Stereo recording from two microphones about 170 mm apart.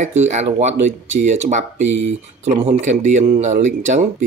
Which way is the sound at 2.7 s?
45° right (ahead or behind).